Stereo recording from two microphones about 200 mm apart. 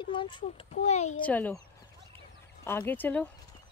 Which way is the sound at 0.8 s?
35° left (ahead or behind).